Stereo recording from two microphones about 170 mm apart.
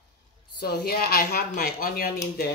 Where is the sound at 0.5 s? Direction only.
70° left (ahead or behind).